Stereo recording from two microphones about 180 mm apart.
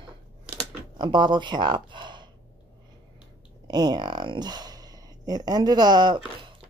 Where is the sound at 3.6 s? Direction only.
25° right (ahead or behind).